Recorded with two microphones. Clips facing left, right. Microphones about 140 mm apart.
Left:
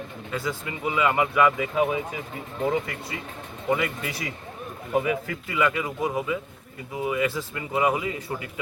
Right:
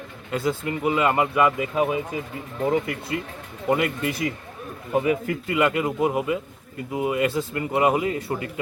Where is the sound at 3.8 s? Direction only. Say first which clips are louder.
Right 5 dB; 55° right (ahead or behind).